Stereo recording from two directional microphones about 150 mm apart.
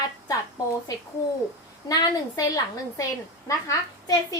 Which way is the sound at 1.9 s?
20° left (ahead or behind).